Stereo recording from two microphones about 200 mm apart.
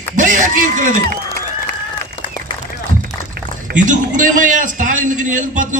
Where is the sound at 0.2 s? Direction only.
40° right (ahead or behind).